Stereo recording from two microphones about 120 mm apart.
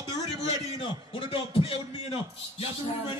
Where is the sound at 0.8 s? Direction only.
50° left (ahead or behind).